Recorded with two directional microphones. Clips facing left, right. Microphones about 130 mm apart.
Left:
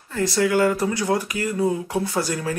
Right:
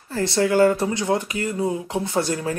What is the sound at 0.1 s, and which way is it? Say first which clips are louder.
Speech: even; 30° right (ahead or behind).